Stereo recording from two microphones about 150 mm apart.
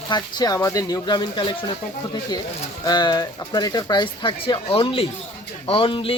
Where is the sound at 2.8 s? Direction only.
25° left (ahead or behind).